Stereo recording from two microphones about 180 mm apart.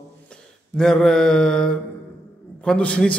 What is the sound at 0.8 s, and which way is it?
A man's voice, 5° left (ahead or behind).